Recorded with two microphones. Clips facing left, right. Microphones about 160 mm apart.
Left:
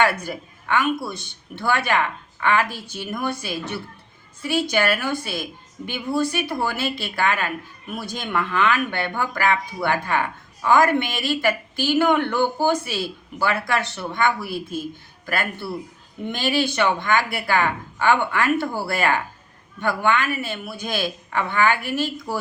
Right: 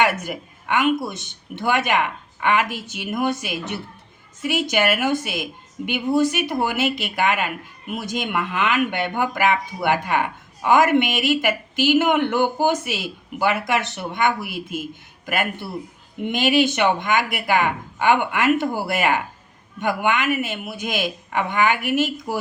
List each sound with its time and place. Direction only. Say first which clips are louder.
0.0 s a woman's voice: even; 20° right (ahead or behind)